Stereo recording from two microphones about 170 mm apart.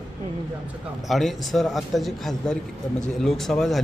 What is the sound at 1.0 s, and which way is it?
A man's voice, centre (ahead or behind).